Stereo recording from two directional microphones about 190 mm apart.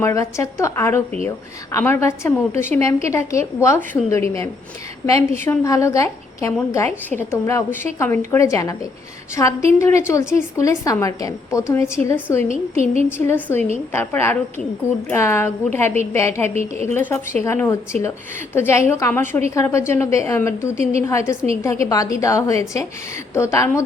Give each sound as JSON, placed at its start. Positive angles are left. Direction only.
{"t": 0.0, "sound": "a woman's voice", "side_deg": 15}
{"t": 12.5, "sound": "a woman's voice", "side_deg": 45}
{"t": 13.2, "sound": "a woman's voice", "side_deg": 10}